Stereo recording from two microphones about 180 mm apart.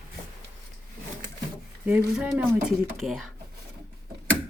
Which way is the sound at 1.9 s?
5° right (ahead or behind).